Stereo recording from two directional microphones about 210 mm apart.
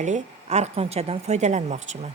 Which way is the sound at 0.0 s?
35° right (ahead or behind).